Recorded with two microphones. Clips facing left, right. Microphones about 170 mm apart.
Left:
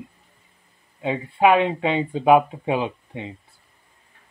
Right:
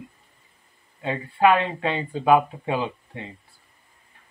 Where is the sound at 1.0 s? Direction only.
15° left (ahead or behind).